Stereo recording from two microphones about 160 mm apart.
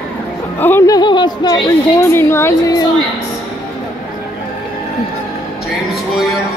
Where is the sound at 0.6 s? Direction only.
15° left (ahead or behind).